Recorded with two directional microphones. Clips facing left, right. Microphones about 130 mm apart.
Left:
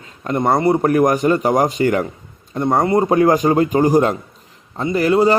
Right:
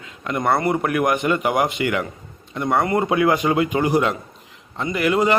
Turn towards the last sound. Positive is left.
turn(degrees=35)  # may be behind; listen again after turning